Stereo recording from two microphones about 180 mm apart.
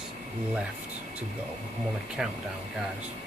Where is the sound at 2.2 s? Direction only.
5° right (ahead or behind).